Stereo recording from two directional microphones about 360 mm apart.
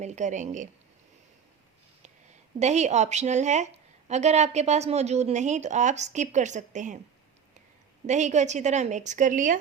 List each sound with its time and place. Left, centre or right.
0.0 s a woman's voice: centre
2.6 s a woman's voice: centre
8.0 s a woman's voice: centre